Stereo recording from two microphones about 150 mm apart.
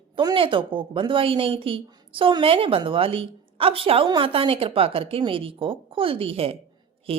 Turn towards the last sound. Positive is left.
turn(degrees=-40)  # may be behind; listen again after turning